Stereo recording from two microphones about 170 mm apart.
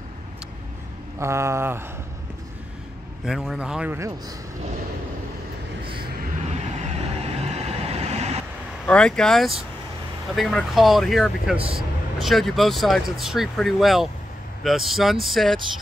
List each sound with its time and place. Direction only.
1.2 s a sound: 15° right (ahead or behind)
3.3 s speech: 5° right (ahead or behind)
6.5 s vehicle: 40° right (ahead or behind)
8.8 s speech: 5° left (ahead or behind)